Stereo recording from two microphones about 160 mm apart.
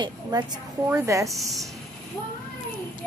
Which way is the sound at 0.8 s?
20° right (ahead or behind).